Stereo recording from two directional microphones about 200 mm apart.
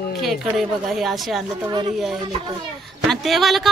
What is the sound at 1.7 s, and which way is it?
Speech, 25° right (ahead or behind).